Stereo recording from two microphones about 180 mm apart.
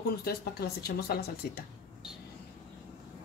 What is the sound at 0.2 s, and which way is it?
A woman's voice, 60° left (ahead or behind).